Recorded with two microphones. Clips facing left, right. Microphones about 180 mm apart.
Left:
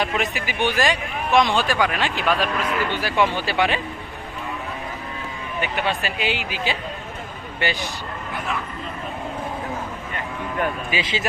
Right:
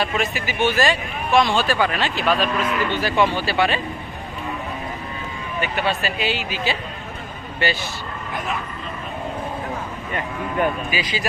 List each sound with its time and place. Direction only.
0.0 s speech: 15° left (ahead or behind)
5.6 s speech: 15° left (ahead or behind)
10.9 s speech: 25° left (ahead or behind)